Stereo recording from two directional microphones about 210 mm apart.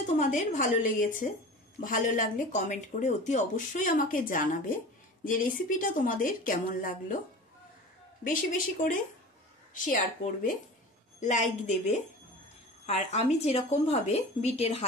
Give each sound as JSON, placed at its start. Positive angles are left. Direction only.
{"t": 0.0, "sound": "speech", "side_deg": 35}
{"t": 8.2, "sound": "speech", "side_deg": 40}